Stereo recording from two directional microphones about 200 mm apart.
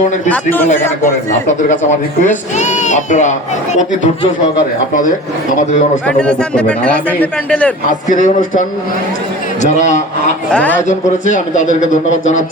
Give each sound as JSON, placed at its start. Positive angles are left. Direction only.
{"t": 0.3, "sound": "a man's voice", "side_deg": 10}
{"t": 1.7, "sound": "speech", "side_deg": 40}
{"t": 6.1, "sound": "a man's voice", "side_deg": 5}
{"t": 8.1, "sound": "speech", "side_deg": 40}
{"t": 10.5, "sound": "a man's voice", "side_deg": 5}
{"t": 10.8, "sound": "speech", "side_deg": 40}